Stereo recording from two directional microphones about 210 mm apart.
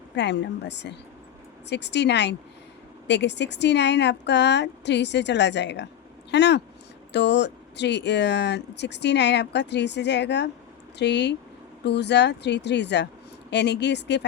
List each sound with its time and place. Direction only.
0.2 s speech: 55° left (ahead or behind)